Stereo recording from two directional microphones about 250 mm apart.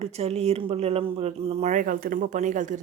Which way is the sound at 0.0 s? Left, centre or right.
Right.